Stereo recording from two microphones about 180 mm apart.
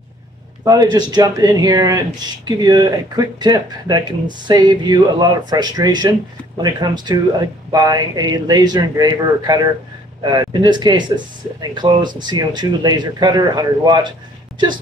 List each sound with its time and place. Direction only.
0.9 s speech: 20° right (ahead or behind)